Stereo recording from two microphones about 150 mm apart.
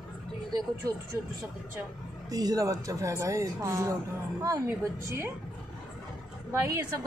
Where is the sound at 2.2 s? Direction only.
25° right (ahead or behind).